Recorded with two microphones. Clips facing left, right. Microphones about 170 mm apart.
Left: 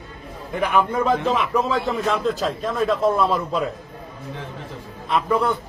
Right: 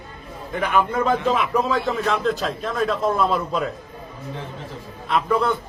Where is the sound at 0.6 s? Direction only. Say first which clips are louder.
Left 1 dB; 5° left (ahead or behind).